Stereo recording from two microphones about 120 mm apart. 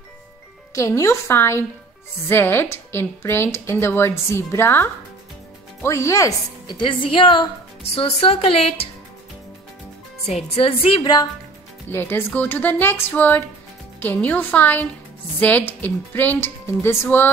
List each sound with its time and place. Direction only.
0.7 s a woman's voice: 25° left (ahead or behind)
5.9 s a woman's voice: 25° left (ahead or behind)
6.7 s speech: 45° left (ahead or behind)
10.2 s speech: 60° left (ahead or behind)
11.9 s a woman's voice: 20° left (ahead or behind)